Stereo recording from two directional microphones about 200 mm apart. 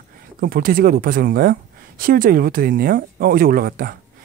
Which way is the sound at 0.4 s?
45° right (ahead or behind).